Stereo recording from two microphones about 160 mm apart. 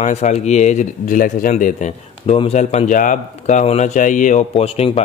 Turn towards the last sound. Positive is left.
turn(degrees=35)  # may be behind; listen again after turning